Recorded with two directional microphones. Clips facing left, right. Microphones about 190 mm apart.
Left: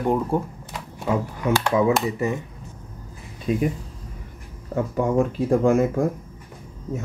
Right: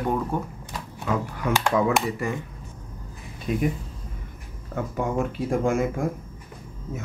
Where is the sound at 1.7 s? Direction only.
20° left (ahead or behind).